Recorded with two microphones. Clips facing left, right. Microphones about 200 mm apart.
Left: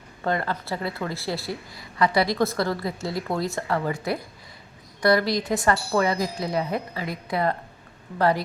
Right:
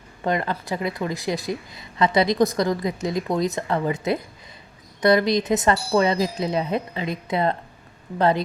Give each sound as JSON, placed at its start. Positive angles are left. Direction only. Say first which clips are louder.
{"t": 0.3, "sound": "a woman's voice", "louder": "right 2 dB", "side_deg": -20}